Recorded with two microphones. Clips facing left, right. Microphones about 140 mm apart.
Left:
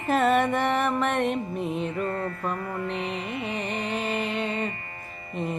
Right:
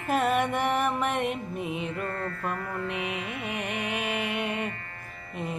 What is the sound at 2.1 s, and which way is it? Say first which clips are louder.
Music: left 3 dB; 20° left (ahead or behind).